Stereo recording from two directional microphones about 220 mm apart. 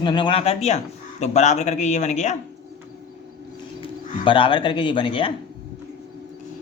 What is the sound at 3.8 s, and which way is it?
Speech, 25° left (ahead or behind).